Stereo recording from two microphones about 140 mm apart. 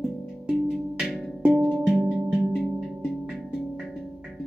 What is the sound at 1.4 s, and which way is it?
Music, 5° right (ahead or behind).